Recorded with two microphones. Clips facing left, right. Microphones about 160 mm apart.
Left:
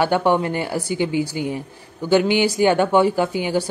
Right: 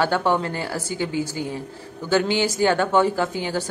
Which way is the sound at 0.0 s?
15° left (ahead or behind).